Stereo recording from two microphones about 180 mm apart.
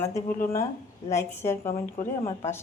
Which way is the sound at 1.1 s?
15° left (ahead or behind).